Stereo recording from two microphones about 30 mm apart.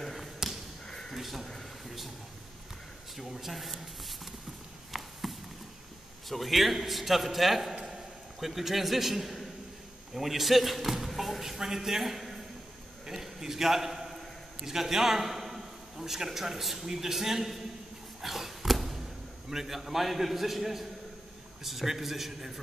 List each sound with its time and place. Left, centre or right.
0.4 s basketball bounce: centre
0.8 s a sound: centre
1.1 s speech: centre
3.2 s a man's voice: centre
4.9 s chop: centre
6.2 s a man's voice: centre
13.1 s a sound: centre
14.7 s a man's voice: centre
18.2 s a sound: centre
19.5 s a man's voice: centre